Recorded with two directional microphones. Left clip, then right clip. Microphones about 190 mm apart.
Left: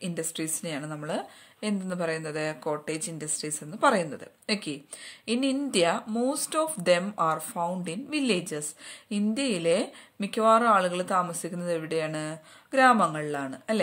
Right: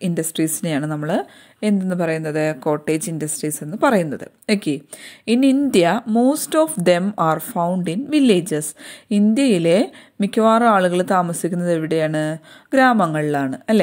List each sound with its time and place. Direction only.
0.0 s a woman's voice: 35° right (ahead or behind)